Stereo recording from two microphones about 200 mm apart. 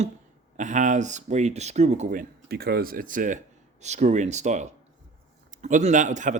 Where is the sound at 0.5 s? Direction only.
40° right (ahead or behind).